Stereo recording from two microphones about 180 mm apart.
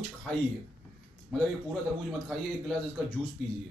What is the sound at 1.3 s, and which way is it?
Speech, centre (ahead or behind).